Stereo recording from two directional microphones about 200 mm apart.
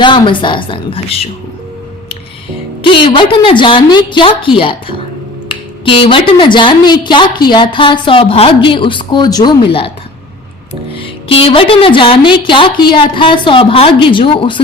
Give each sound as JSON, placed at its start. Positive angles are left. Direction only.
{"t": 0.0, "sound": "a woman's voice", "side_deg": 25}
{"t": 2.8, "sound": "a woman's voice", "side_deg": 25}
{"t": 10.9, "sound": "a woman's voice", "side_deg": 25}